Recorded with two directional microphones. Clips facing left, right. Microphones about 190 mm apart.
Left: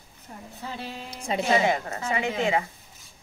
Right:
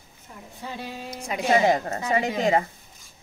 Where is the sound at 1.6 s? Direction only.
35° right (ahead or behind).